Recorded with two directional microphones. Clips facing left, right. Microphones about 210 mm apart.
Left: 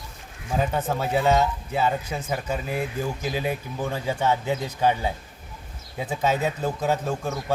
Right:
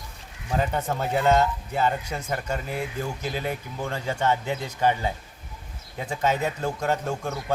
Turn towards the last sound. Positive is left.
turn(degrees=5)  # may be behind; listen again after turning